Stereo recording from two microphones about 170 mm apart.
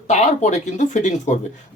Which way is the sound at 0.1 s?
40° left (ahead or behind).